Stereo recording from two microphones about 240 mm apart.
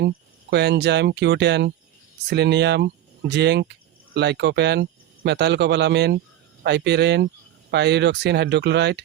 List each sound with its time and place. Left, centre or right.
0.5 s speech: right